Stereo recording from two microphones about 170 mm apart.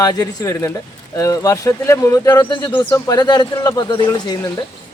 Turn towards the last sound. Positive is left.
turn(degrees=25)  # may be behind; listen again after turning